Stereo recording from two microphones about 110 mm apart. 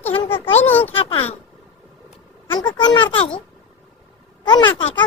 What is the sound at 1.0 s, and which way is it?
Speech, 55° left (ahead or behind).